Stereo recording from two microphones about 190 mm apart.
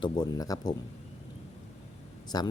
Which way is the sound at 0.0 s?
20° left (ahead or behind).